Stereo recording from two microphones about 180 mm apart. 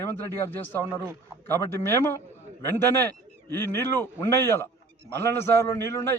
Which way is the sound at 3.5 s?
15° left (ahead or behind).